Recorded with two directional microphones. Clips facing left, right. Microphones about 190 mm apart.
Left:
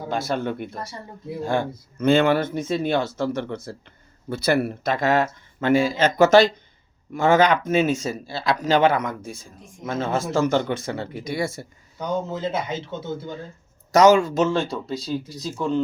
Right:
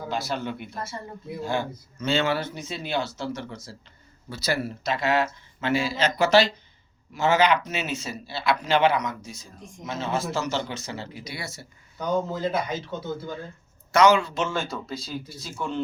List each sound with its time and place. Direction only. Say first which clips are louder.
0.1 s speech: left 5 dB; 50° left (ahead or behind)
11.9 s speech: even; 25° left (ahead or behind)
13.9 s speech: left 4 dB; 45° left (ahead or behind)